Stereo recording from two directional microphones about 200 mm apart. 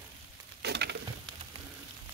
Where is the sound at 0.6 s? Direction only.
55° right (ahead or behind).